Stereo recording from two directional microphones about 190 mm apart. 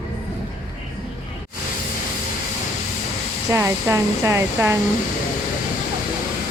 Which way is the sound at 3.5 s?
15° right (ahead or behind).